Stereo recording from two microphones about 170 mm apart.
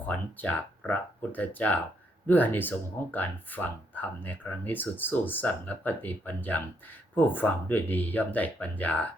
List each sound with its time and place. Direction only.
0.0 s speech: 10° left (ahead or behind)